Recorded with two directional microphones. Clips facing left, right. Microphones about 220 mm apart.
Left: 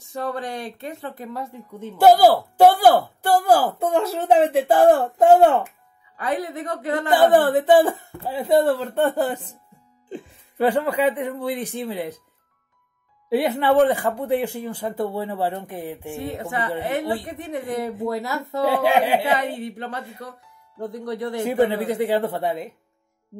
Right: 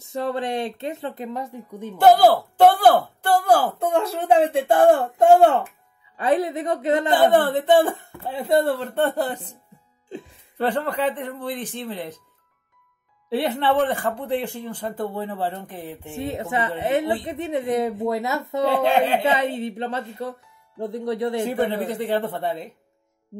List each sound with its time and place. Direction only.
0.1 s a woman's voice: 25° right (ahead or behind)
2.0 s speech: 10° left (ahead or behind)
6.1 s a woman's voice: 25° right (ahead or behind)
7.2 s speech: 10° left (ahead or behind)
13.3 s speech: 10° left (ahead or behind)
16.2 s a woman's voice: 20° right (ahead or behind)
18.8 s speech: 10° left (ahead or behind)
19.3 s a woman's voice: 20° right (ahead or behind)
21.8 s speech: 10° left (ahead or behind)